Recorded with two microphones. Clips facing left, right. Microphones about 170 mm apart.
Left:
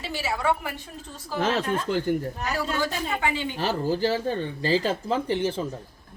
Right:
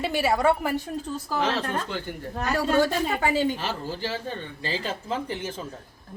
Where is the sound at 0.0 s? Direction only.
55° right (ahead or behind).